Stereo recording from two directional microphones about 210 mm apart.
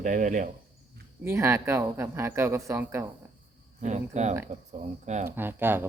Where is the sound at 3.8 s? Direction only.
35° right (ahead or behind).